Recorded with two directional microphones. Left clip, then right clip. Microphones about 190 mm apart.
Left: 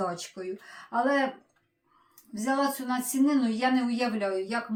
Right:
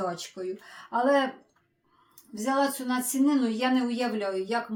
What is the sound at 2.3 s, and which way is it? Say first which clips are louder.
Speech: right 1 dB; 5° left (ahead or behind).